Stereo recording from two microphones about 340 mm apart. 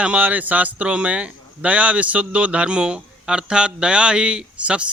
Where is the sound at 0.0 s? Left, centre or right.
Centre.